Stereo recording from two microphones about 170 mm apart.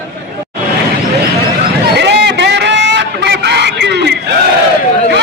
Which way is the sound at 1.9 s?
80° right.